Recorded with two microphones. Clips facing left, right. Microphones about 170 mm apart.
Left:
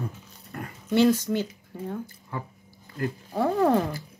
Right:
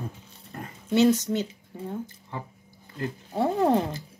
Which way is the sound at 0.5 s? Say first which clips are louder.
Even; 25° right (ahead or behind).